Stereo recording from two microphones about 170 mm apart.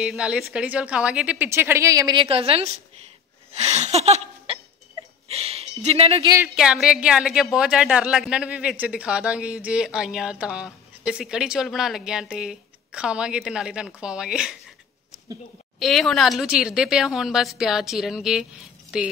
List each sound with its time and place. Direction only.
0.0 s a woman's voice: 5° right (ahead or behind); by 2.2 s 20° right (ahead or behind)
2.2 s a woman's voice: 35° right (ahead or behind)
3.5 s laughter: 40° right (ahead or behind)
5.3 s a sound: 35° right (ahead or behind)
6.5 s speech: 5° right (ahead or behind)
15.8 s speech: centre (ahead or behind)